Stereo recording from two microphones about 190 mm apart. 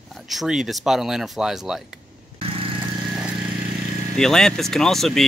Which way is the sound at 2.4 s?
30° right (ahead or behind).